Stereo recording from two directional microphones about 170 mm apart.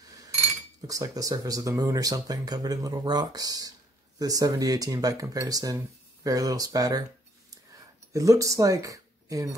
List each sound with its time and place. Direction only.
0.8 s speech: 20° right (ahead or behind)
8.1 s speech: 20° right (ahead or behind)